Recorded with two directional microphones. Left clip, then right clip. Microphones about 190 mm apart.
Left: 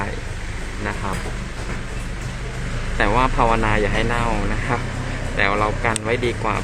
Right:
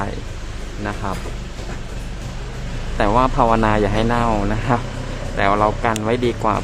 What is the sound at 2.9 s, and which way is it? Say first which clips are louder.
Speech: right 2 dB; 15° right (ahead or behind).